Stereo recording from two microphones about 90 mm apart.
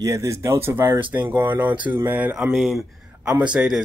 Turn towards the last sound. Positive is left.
turn(degrees=-10)  # may be behind; listen again after turning